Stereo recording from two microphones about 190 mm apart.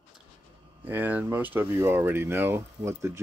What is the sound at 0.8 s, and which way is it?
Speech, 10° right (ahead or behind).